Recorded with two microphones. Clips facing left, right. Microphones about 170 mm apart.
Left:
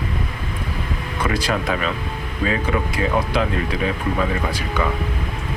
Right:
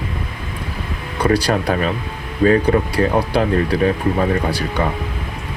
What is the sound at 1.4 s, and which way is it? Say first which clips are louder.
Speech: right 4 dB; 40° right (ahead or behind).